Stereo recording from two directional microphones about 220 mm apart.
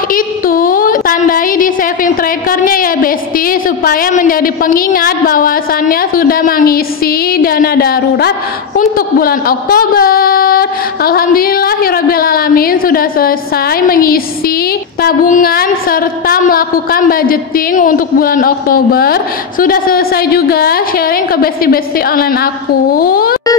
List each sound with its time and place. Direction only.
0.1 s a woman's voice: 40° left (ahead or behind)